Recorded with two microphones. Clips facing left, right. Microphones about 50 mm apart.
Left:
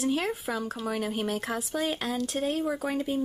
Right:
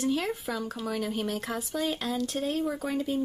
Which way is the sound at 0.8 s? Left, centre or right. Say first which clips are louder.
Left 1 dB; centre.